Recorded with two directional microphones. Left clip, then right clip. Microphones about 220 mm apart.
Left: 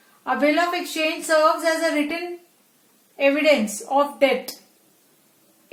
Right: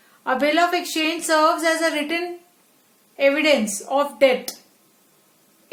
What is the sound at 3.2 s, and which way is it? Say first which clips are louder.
A woman's voice: even; 40° right (ahead or behind).